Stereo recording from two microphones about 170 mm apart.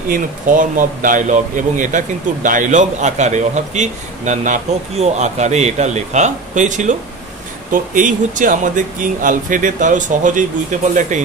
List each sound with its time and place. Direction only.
0.1 s speech: 50° right (ahead or behind)